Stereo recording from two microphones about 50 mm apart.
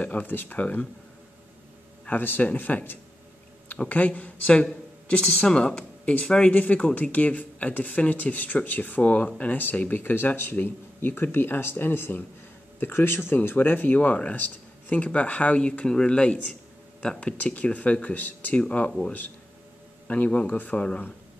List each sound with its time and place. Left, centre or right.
0.0 s speech: left
2.0 s speech: left
6.5 s speech: left
17.4 s speech: left
18.6 s speech: left
20.1 s speech: left